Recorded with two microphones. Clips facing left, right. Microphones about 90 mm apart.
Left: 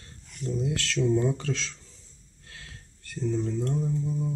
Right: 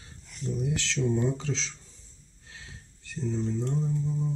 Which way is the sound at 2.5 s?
10° right (ahead or behind).